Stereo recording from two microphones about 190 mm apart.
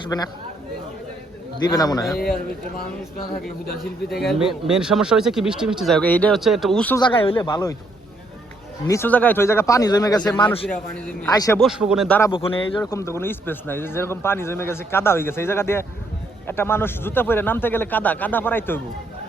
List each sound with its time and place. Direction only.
0.1 s speech: 20° left (ahead or behind)
1.6 s speech: 20° left (ahead or behind)
4.1 s speech: centre (ahead or behind)
6.9 s speech: 25° left (ahead or behind)
8.9 s speech: 10° left (ahead or behind)
11.6 s speech: 5° right (ahead or behind)
12.3 s speech: 25° left (ahead or behind)
12.8 s speech: 15° left (ahead or behind)